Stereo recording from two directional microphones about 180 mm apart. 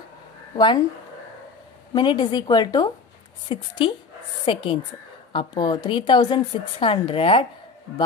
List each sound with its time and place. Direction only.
0.6 s a woman's voice: 25° left (ahead or behind)
2.0 s a woman's voice: 25° left (ahead or behind)